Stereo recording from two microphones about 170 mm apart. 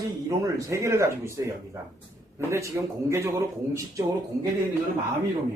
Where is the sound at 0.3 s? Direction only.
20° right (ahead or behind).